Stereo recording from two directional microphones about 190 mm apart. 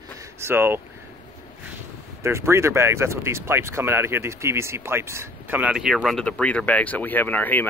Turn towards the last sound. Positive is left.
turn(degrees=10)  # may be behind; listen again after turning